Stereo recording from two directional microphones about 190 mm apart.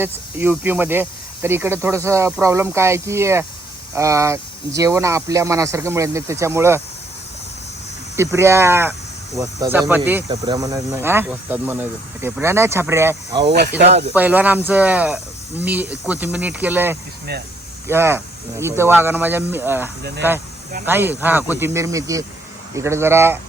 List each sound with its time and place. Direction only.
0.0 s speech: 10° right (ahead or behind)
8.1 s speech: 15° right (ahead or behind)
10.2 s speech: 20° right (ahead or behind)
13.5 s speech: 60° right (ahead or behind)
14.1 s speech: 10° right (ahead or behind)